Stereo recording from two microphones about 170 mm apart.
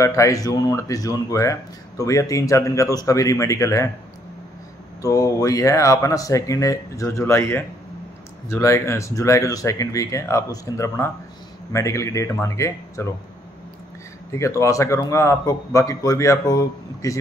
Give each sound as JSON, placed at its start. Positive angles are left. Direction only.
{"t": 0.0, "sound": "speech", "side_deg": 20}
{"t": 5.0, "sound": "a man's voice", "side_deg": 20}
{"t": 14.3, "sound": "a man's voice", "side_deg": 15}